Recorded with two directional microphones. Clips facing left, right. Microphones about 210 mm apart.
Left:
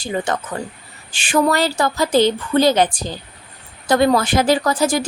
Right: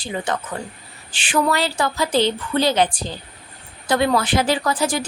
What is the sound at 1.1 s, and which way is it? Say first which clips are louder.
A woman's voice: left 3 dB; 45° left (ahead or behind).